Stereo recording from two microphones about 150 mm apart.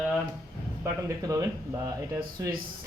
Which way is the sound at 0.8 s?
20° right (ahead or behind).